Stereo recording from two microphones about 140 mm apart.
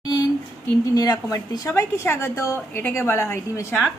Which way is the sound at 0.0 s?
30° left (ahead or behind).